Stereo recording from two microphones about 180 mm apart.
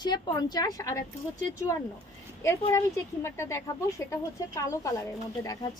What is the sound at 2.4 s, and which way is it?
A woman's voice, 15° left (ahead or behind).